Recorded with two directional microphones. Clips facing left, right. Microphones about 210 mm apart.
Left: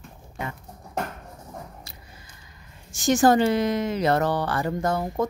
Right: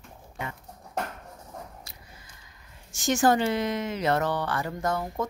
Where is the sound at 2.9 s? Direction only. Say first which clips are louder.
Left 4 dB; 35° left (ahead or behind).